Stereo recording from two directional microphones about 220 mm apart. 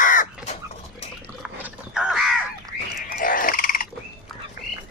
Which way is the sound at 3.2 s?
40° left (ahead or behind).